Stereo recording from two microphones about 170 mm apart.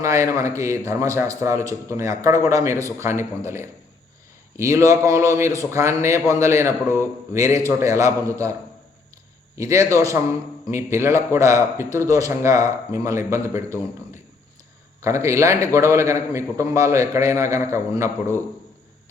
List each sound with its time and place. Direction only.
0.0 s a man's voice: 20° right (ahead or behind)
9.6 s a man's voice: 20° right (ahead or behind)